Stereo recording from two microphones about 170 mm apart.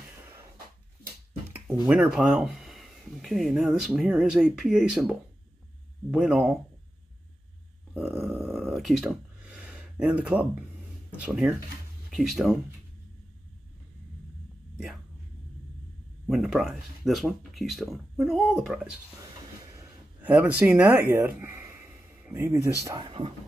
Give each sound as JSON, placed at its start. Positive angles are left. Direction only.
{"t": 1.9, "sound": "speech", "side_deg": -5}
{"t": 7.9, "sound": "a sound", "side_deg": 0}
{"t": 11.2, "sound": "speech", "side_deg": -5}
{"t": 16.3, "sound": "speech", "side_deg": 0}
{"t": 19.7, "sound": "a sound", "side_deg": -15}
{"t": 23.0, "sound": "speech", "side_deg": -30}